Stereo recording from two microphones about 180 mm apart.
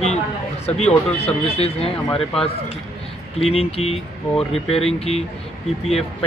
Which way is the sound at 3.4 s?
35° left (ahead or behind).